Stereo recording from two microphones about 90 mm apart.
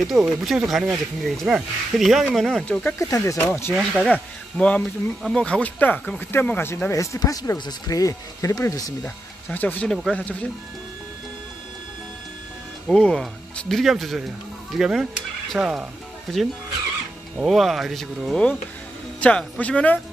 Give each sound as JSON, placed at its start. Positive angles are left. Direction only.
{"t": 0.0, "sound": "speech", "side_deg": 0}
{"t": 3.0, "sound": "speech", "side_deg": 35}
{"t": 3.7, "sound": "speech", "side_deg": 5}
{"t": 7.5, "sound": "speech", "side_deg": 50}
{"t": 9.0, "sound": "speech", "side_deg": 20}
{"t": 12.8, "sound": "speech", "side_deg": 5}
{"t": 16.3, "sound": "a man's voice", "side_deg": 5}